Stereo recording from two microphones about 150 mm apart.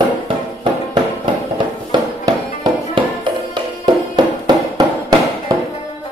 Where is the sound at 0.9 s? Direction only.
30° right (ahead or behind).